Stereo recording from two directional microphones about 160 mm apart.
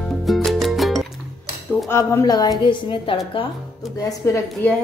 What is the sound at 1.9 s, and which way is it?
Speech, 15° left (ahead or behind).